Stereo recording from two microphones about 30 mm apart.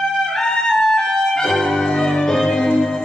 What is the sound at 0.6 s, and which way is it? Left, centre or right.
Music, centre.